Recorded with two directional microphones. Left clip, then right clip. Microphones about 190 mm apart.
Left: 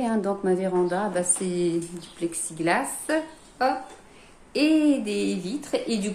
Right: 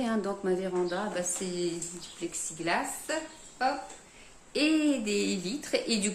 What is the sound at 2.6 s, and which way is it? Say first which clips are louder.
Speech: left 6 dB; 30° left (ahead or behind).